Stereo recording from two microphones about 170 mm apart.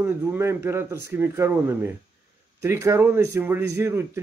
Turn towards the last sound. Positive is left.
turn(degrees=-15)  # may be behind; listen again after turning